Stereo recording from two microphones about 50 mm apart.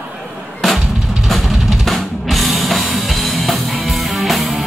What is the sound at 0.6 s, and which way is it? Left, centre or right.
Drum, centre.